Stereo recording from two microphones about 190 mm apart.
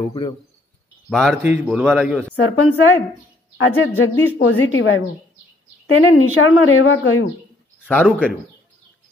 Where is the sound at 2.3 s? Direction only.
90° left.